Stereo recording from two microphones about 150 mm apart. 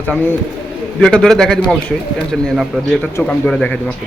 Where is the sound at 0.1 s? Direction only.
10° left (ahead or behind).